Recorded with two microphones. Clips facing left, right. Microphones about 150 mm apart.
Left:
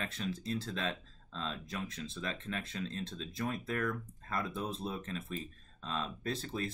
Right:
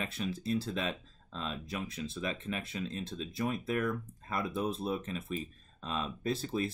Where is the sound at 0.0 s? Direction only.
10° right (ahead or behind).